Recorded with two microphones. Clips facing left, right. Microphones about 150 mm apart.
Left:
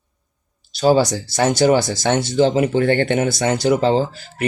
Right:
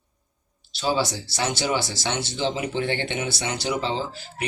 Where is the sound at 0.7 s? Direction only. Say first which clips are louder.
Left 9 dB; 45° left (ahead or behind).